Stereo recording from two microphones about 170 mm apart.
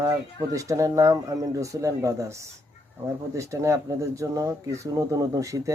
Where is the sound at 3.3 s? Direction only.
15° right (ahead or behind).